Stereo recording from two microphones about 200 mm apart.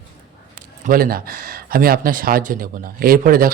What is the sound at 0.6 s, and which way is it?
A man's voice, 45° right (ahead or behind).